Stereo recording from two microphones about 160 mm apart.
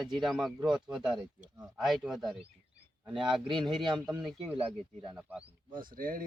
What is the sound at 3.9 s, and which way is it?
Speech, 25° right (ahead or behind).